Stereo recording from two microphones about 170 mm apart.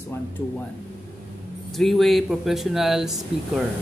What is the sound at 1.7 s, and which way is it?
Speech, centre (ahead or behind).